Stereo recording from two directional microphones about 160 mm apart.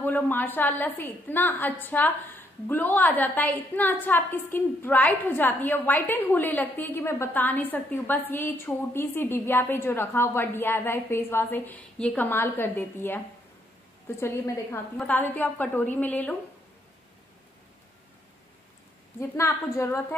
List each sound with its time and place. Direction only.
0.0 s a woman's voice: 10° left (ahead or behind)
19.1 s a woman's voice: 15° left (ahead or behind)